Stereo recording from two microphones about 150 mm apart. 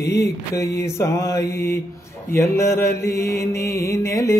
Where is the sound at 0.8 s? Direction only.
20° left (ahead or behind).